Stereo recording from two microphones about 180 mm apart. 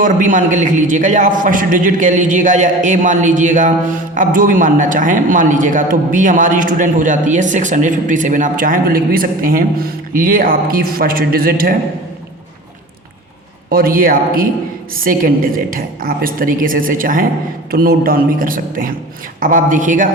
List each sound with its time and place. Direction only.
0.0 s a man's voice: 45° right (ahead or behind)
13.7 s a man's voice: 55° right (ahead or behind)